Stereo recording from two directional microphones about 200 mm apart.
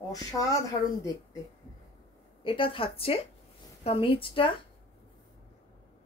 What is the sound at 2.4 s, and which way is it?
A woman's voice, 25° left (ahead or behind).